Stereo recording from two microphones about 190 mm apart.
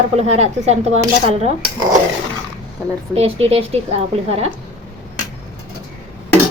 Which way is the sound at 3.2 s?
30° right (ahead or behind).